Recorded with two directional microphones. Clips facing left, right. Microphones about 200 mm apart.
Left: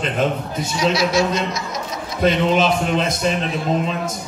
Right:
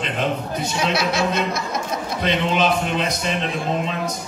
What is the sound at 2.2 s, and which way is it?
A man's voice, 45° left (ahead or behind).